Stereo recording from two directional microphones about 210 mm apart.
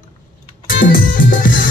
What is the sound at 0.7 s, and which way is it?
Music, 40° left (ahead or behind).